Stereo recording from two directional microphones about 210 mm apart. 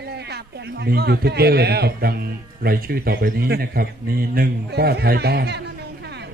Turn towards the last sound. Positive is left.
turn(degrees=-55)  # may be behind; listen again after turning